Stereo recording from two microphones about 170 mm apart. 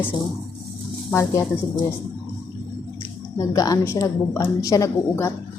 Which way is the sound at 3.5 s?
20° left (ahead or behind).